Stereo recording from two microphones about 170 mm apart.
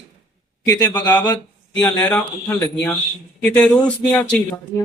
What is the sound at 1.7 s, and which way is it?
Speech, 5° left (ahead or behind).